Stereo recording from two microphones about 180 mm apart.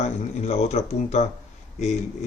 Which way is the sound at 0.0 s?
35° left (ahead or behind).